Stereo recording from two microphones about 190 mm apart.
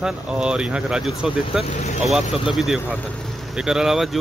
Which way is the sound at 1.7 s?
40° left (ahead or behind).